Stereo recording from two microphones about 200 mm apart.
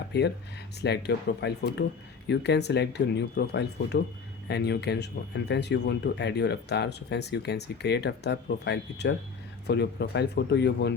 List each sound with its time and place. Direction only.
0.1 s speech: 55° left (ahead or behind)